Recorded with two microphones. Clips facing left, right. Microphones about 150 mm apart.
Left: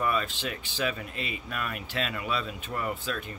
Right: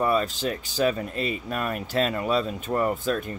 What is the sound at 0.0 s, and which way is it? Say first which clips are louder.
Speech: right 6 dB; 35° right (ahead or behind).